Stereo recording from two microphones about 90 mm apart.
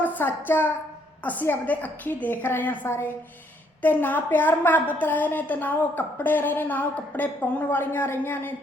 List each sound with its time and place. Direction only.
0.0 s a woman's voice: 20° left (ahead or behind)